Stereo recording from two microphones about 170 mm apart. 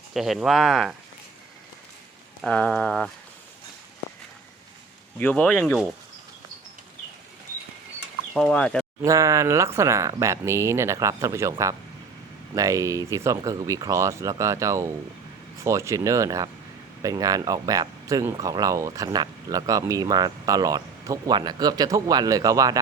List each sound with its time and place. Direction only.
0.1 s speech: centre (ahead or behind)
2.4 s speech: 5° left (ahead or behind)
5.2 s speech: 10° left (ahead or behind)
8.3 s speech: 10° left (ahead or behind)
9.0 s speech: 20° right (ahead or behind)
11.5 s speech: 25° right (ahead or behind)